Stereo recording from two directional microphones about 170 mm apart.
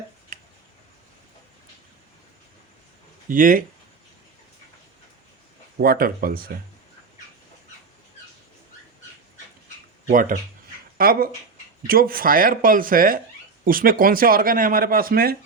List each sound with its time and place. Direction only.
3.2 s speech: 55° right (ahead or behind)
5.8 s speech: 65° right (ahead or behind)
10.1 s speech: 50° right (ahead or behind)
10.9 s speech: 60° right (ahead or behind)